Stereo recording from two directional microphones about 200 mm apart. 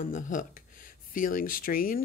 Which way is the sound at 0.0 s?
40° left (ahead or behind).